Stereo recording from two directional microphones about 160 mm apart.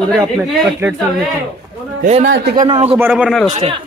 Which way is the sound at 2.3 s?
65° right (ahead or behind).